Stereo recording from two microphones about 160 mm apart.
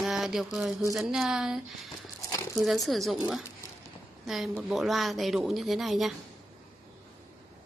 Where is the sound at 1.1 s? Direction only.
5° right (ahead or behind).